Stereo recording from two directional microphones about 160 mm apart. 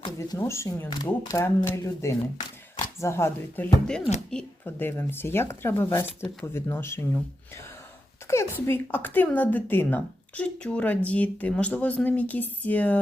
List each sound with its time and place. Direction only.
0.2 s speech: 15° left (ahead or behind)